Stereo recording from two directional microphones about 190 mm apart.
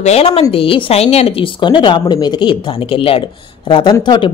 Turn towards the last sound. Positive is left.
turn(degrees=25)  # may be behind; listen again after turning